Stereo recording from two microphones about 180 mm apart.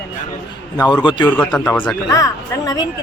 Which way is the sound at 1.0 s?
25° left (ahead or behind).